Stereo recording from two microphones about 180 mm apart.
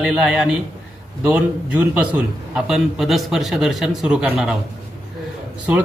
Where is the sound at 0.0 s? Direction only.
5° right (ahead or behind).